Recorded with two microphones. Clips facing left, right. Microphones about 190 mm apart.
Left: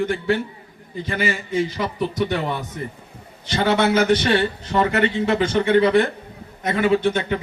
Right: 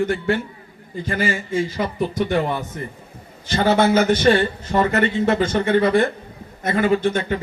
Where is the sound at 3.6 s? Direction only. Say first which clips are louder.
Right 1 dB; 50° right (ahead or behind).